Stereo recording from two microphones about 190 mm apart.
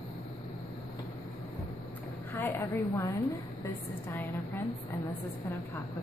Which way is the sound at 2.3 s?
15° left (ahead or behind).